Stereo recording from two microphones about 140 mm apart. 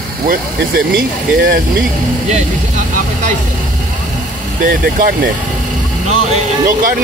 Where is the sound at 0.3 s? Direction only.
90° right.